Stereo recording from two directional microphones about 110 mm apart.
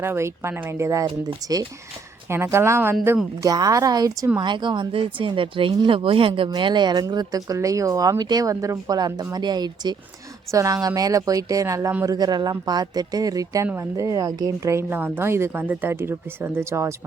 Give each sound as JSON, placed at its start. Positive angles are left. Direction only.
{"t": 0.0, "sound": "a woman's voice", "side_deg": -20}
{"t": 2.3, "sound": "a woman's voice", "side_deg": -25}
{"t": 3.4, "sound": "a woman's voice", "side_deg": -35}